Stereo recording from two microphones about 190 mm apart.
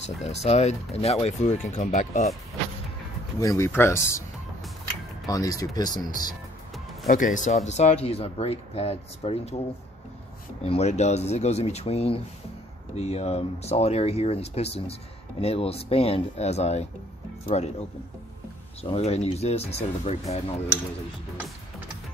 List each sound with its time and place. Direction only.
0.0 s speech: 35° left (ahead or behind)
3.3 s speech: 15° left (ahead or behind)
5.2 s speech: 20° left (ahead or behind)
7.1 s speech: 45° left (ahead or behind)
10.6 s speech: 35° left (ahead or behind)